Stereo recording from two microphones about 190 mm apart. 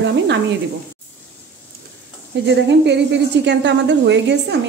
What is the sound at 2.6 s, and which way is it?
A woman's voice, 65° right (ahead or behind).